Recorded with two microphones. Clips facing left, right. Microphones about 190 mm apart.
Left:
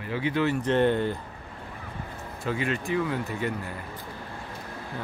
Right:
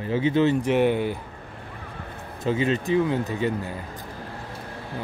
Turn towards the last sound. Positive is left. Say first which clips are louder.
# right 5 dB
turn(degrees=-20)  # may be behind; listen again after turning